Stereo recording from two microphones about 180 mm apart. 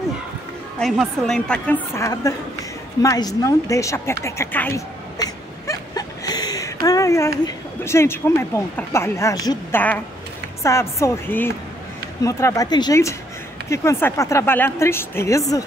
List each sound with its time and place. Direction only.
0.7 s a woman's voice: centre (ahead or behind)
2.0 s a woman's voice: 15° left (ahead or behind)
3.0 s a sound: 20° left (ahead or behind)
6.9 s a woman's voice: 15° left (ahead or behind)